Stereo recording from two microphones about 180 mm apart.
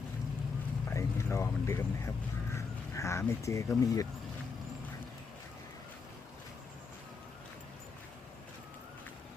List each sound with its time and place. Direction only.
0.9 s speech: 15° left (ahead or behind)